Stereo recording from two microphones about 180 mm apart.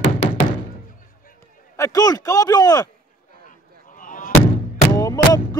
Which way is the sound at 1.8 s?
20° left (ahead or behind).